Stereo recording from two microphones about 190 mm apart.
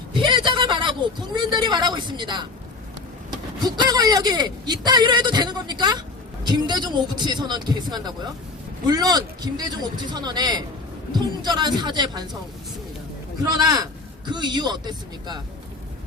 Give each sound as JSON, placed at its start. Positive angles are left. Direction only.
{"t": 0.1, "sound": "a sound", "side_deg": -25}
{"t": 3.6, "sound": "speech", "side_deg": -20}
{"t": 13.4, "sound": "speech", "side_deg": -20}